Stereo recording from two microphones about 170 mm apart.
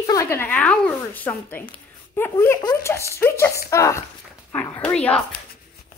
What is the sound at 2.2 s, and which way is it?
Speech, 15° left (ahead or behind).